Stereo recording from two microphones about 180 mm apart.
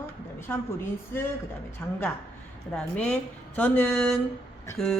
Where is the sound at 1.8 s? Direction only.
10° left (ahead or behind).